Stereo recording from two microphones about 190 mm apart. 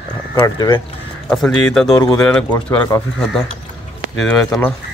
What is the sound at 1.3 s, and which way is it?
Speech, centre (ahead or behind).